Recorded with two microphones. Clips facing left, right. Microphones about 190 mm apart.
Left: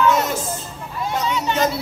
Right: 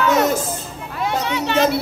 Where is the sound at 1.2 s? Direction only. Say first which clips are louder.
Right 2 dB; 65° right (ahead or behind).